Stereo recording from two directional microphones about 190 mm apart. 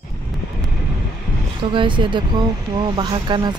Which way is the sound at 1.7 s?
25° right (ahead or behind).